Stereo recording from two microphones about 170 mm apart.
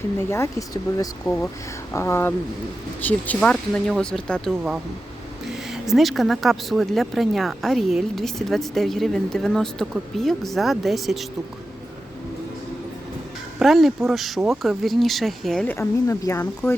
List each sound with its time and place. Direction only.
0.2 s speech: 15° left (ahead or behind); by 11.3 s centre (ahead or behind)
13.6 s speech: centre (ahead or behind)
15.6 s speech: 15° left (ahead or behind)